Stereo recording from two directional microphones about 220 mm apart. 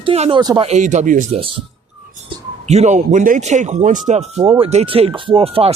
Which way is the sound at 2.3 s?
25° right (ahead or behind).